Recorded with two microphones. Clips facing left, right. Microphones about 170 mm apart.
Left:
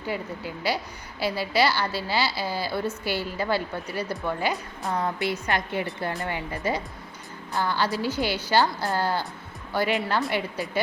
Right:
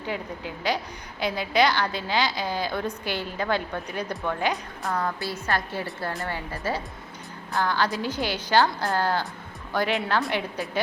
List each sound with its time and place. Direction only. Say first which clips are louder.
0.1 s a woman's voice: left 1 dB; 5° left (ahead or behind)
4.8 s a woman's voice: left 3 dB; 20° left (ahead or behind); by 10.7 s centre (ahead or behind)